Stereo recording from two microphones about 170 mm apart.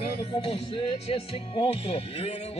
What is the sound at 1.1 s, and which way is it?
Speech, 35° left (ahead or behind).